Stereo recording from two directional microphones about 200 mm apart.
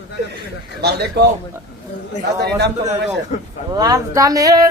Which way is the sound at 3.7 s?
15° right (ahead or behind).